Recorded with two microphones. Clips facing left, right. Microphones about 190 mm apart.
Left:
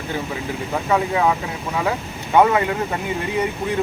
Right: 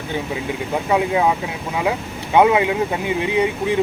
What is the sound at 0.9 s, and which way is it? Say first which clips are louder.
Speech: right 2 dB; 20° right (ahead or behind).